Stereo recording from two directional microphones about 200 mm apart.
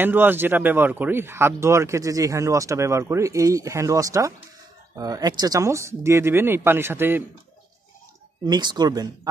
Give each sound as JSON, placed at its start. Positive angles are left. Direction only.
{"t": 0.0, "sound": "speech", "side_deg": -10}
{"t": 8.5, "sound": "speech", "side_deg": -20}